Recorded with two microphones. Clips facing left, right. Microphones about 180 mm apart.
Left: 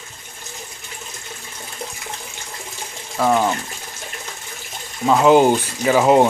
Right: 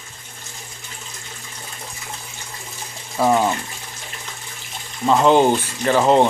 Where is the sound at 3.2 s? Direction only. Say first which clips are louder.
Even; 5° right (ahead or behind).